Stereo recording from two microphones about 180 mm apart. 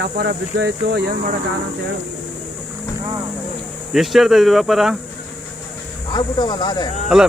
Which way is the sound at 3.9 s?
Centre (ahead or behind).